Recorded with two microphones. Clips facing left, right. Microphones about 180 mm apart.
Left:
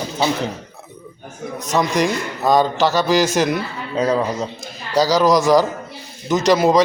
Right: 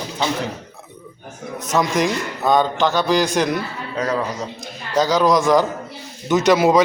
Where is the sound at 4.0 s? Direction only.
20° left (ahead or behind).